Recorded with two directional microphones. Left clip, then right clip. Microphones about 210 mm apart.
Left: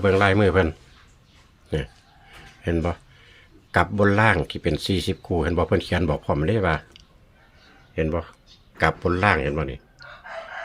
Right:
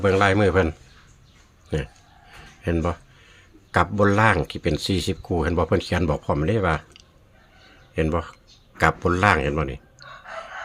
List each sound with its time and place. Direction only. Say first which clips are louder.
0.0 s speech: even; centre (ahead or behind)
7.9 s a man's voice: right 1 dB; 20° right (ahead or behind)